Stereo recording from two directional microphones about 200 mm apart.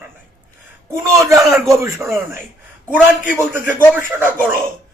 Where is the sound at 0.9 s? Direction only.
15° right (ahead or behind).